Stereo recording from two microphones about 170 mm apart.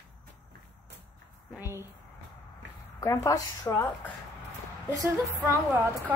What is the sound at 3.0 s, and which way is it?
A woman's voice, 20° left (ahead or behind).